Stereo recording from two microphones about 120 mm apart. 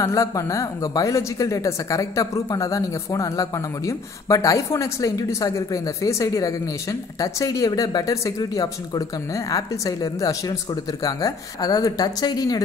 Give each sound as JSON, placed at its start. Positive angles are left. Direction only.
{"t": 0.0, "sound": "speech", "side_deg": 25}